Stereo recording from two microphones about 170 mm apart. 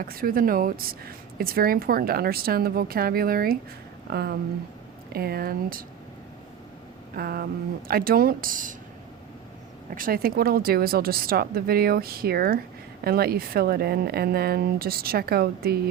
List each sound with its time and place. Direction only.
0.0 s speech: 60° right (ahead or behind)
7.2 s speech: 60° right (ahead or behind)
9.9 s speech: 60° right (ahead or behind)